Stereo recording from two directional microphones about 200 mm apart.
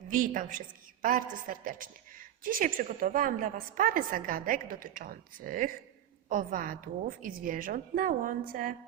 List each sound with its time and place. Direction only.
0.1 s a woman's voice: 40° right (ahead or behind)